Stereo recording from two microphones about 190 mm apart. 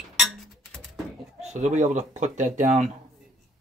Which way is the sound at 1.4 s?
40° right (ahead or behind).